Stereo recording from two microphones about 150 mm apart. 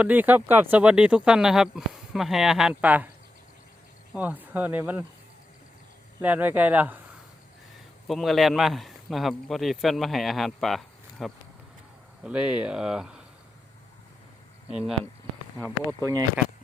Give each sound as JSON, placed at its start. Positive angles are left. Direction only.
{"t": 0.0, "sound": "speech", "side_deg": -10}
{"t": 4.1, "sound": "speech", "side_deg": -10}
{"t": 6.2, "sound": "speech", "side_deg": -10}
{"t": 8.0, "sound": "a man's voice", "side_deg": 0}
{"t": 14.7, "sound": "a man's voice", "side_deg": -5}
{"t": 15.5, "sound": "speech", "side_deg": 15}
{"t": 16.0, "sound": "speech", "side_deg": -25}